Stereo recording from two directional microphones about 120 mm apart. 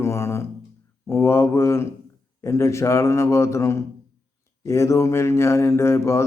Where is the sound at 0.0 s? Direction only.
20° left (ahead or behind).